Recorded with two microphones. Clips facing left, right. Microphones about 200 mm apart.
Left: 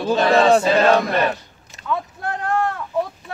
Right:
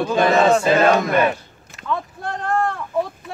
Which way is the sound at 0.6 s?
50° right (ahead or behind).